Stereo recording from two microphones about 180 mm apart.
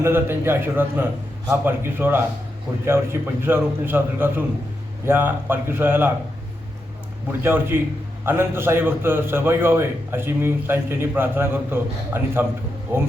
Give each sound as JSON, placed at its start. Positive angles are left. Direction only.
{"t": 0.0, "sound": "a man's voice", "side_deg": -15}
{"t": 7.3, "sound": "a man's voice", "side_deg": -10}